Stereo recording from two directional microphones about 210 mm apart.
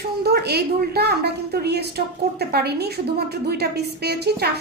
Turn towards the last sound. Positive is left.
turn(degrees=-50)  # may be behind; listen again after turning